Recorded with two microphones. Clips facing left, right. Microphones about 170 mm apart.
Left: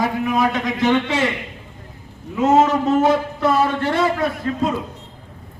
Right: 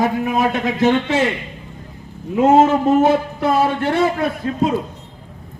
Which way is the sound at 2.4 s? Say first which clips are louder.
Right 3 dB; 55° right (ahead or behind).